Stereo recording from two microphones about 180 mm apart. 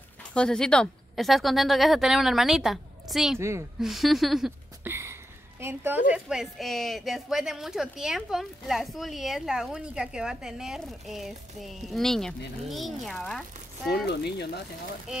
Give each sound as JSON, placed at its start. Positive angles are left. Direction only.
{"t": 0.3, "sound": "a woman's voice", "side_deg": 5}
{"t": 3.3, "sound": "speech", "side_deg": -15}
{"t": 3.8, "sound": "a woman's voice", "side_deg": 0}
{"t": 4.8, "sound": "a sound", "side_deg": -15}
{"t": 5.6, "sound": "a woman's voice", "side_deg": -10}
{"t": 13.8, "sound": "speech", "side_deg": 65}